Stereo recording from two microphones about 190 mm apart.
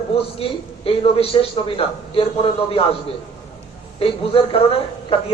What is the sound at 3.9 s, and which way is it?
A man's voice, 30° left (ahead or behind).